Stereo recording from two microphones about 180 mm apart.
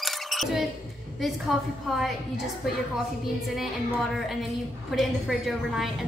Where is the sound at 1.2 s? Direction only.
Centre (ahead or behind).